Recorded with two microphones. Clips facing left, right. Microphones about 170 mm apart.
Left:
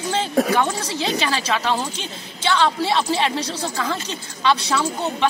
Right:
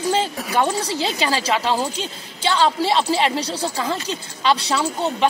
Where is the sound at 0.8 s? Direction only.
35° right (ahead or behind).